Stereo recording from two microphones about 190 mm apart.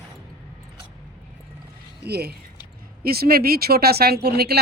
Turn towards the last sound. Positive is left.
turn(degrees=-55)  # may be behind; listen again after turning